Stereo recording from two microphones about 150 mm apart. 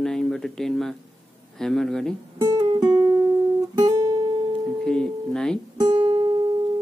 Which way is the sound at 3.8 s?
20° right (ahead or behind).